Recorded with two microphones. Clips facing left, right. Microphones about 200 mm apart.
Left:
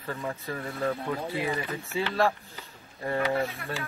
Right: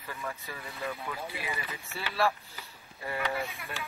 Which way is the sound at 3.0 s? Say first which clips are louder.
Left 6 dB; 35° left (ahead or behind).